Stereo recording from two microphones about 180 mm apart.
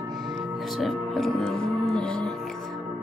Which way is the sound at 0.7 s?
Centre (ahead or behind).